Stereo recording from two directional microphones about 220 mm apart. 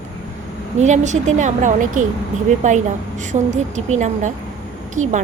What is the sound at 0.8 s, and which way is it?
A woman's voice, 30° right (ahead or behind).